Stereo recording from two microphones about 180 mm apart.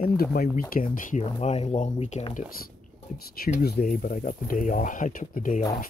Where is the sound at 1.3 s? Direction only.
35° left (ahead or behind).